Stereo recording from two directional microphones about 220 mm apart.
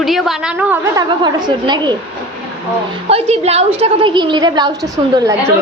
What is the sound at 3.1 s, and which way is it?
A woman's voice, 30° right (ahead or behind).